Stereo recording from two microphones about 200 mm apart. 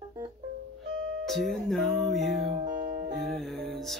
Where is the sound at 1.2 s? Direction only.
Centre (ahead or behind).